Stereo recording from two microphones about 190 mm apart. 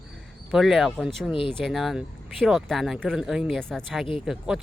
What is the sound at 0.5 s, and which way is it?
Speech, centre (ahead or behind).